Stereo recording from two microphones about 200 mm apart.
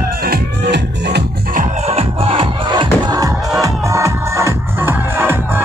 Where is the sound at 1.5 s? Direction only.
30° right (ahead or behind); by 5.6 s 10° right (ahead or behind).